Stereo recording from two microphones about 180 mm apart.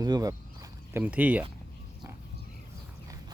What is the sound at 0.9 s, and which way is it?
Speech, 10° right (ahead or behind).